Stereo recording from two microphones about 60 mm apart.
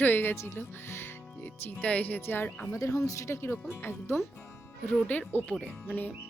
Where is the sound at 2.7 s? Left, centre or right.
Left.